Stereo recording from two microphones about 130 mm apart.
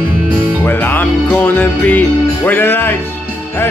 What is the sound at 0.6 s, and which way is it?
Music, 15° left (ahead or behind).